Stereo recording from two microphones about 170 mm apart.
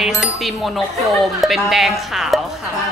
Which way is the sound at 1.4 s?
Centre (ahead or behind).